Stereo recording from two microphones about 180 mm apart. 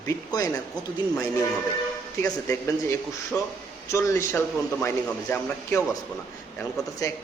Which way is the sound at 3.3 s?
5° left (ahead or behind).